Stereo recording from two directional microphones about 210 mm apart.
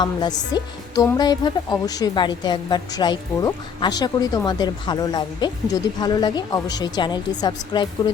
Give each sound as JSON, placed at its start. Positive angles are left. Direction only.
{"t": 0.0, "sound": "speech", "side_deg": 20}